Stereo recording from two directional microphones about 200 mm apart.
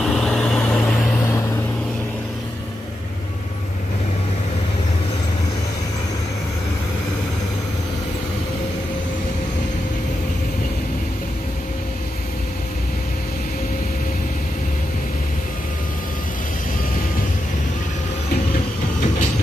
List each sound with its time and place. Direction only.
0.1 s vehicle: 5° left (ahead or behind)